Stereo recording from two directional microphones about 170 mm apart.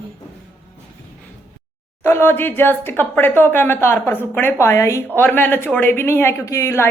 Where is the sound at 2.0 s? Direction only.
10° left (ahead or behind).